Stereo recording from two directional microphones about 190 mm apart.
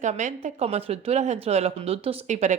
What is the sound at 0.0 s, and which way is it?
A woman's voice, 40° right (ahead or behind).